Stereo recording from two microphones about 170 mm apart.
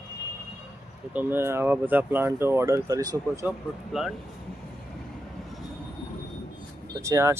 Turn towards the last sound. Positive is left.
turn(degrees=-15)  # may be behind; listen again after turning